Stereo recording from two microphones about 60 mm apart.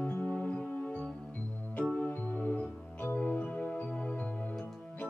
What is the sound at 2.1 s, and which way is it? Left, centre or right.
Music, left.